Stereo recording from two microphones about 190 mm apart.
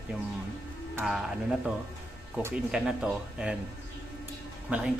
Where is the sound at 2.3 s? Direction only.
5° right (ahead or behind).